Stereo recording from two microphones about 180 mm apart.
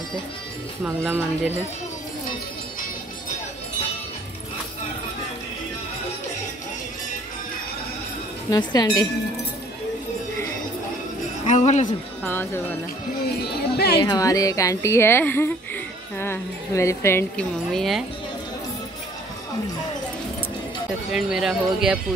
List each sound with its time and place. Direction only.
0.8 s speech: 10° right (ahead or behind)
8.5 s speech: 25° left (ahead or behind)
11.4 s a woman's voice: 40° left (ahead or behind)
12.2 s speech: 10° left (ahead or behind)
13.4 s speech: 60° left (ahead or behind)
14.0 s speech: 20° left (ahead or behind)
17.6 s speech: centre (ahead or behind)
21.1 s speech: centre (ahead or behind)